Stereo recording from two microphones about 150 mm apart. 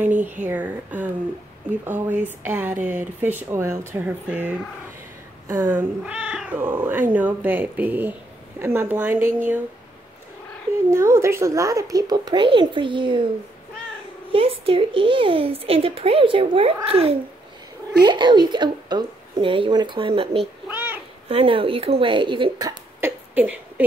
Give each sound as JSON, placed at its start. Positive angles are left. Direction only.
{"t": 0.5, "sound": "speech", "side_deg": -10}
{"t": 5.7, "sound": "speech", "side_deg": -10}
{"t": 10.9, "sound": "speech", "side_deg": -20}
{"t": 14.3, "sound": "speech", "side_deg": -40}
{"t": 20.6, "sound": "babbling", "side_deg": -10}
{"t": 21.3, "sound": "speech", "side_deg": -35}
{"t": 22.9, "sound": "a sound", "side_deg": -15}